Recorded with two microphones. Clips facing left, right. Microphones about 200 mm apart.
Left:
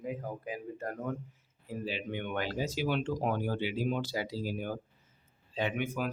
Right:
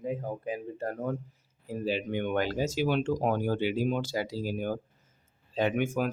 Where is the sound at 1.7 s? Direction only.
40° right (ahead or behind).